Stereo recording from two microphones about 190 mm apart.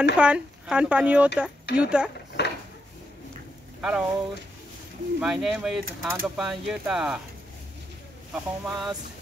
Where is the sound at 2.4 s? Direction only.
60° left (ahead or behind).